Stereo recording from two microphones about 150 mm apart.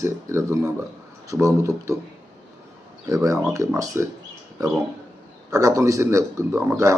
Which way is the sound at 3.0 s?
20° right (ahead or behind).